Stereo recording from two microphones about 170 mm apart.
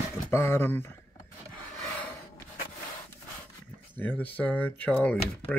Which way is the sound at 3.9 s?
10° left (ahead or behind).